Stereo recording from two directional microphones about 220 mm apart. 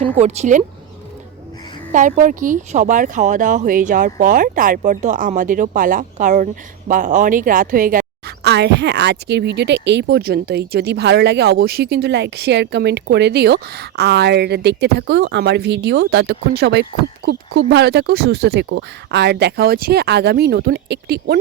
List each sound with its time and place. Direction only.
0.0 s speech: 30° right (ahead or behind)
1.9 s speech: 35° right (ahead or behind)
8.4 s speech: 50° right (ahead or behind)